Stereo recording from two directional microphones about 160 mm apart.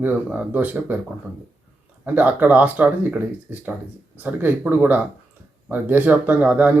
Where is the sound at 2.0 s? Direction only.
10° right (ahead or behind).